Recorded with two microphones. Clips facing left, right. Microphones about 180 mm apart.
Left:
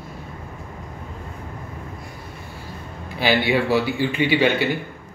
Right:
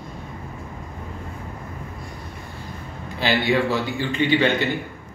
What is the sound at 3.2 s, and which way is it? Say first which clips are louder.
A man's voice: left 1 dB; 10° left (ahead or behind).